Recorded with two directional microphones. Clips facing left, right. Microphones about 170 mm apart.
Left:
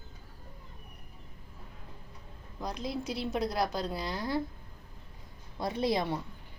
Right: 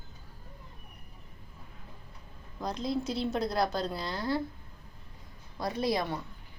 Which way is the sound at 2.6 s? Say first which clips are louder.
Right 3 dB; 10° left (ahead or behind).